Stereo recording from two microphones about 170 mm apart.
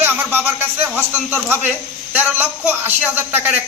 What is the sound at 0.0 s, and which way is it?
Music, 10° right (ahead or behind).